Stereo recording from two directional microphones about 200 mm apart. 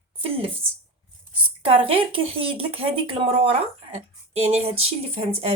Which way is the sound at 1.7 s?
25° right (ahead or behind).